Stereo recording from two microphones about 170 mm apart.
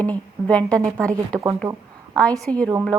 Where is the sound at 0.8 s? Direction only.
20° right (ahead or behind).